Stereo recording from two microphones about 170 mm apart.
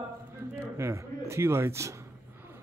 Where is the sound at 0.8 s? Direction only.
15° right (ahead or behind).